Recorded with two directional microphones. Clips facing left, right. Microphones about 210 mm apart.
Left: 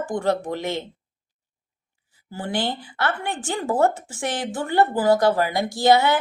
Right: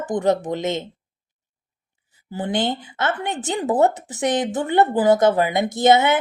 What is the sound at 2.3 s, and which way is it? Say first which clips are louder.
Speech: right 3 dB; 20° right (ahead or behind).